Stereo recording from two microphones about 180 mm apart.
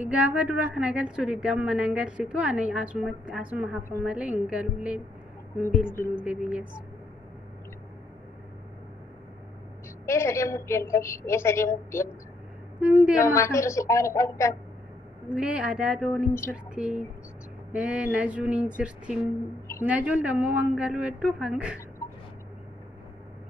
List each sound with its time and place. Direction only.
0.0 s a woman's voice: 10° right (ahead or behind)
6.2 s a woman's voice: 5° right (ahead or behind)
10.0 s a woman's voice: 15° left (ahead or behind)
12.8 s a woman's voice: 5° right (ahead or behind)
13.2 s a woman's voice: 15° left (ahead or behind)
15.2 s a woman's voice: 5° right (ahead or behind)